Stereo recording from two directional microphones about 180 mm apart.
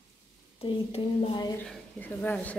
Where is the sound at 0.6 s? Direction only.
30° left (ahead or behind).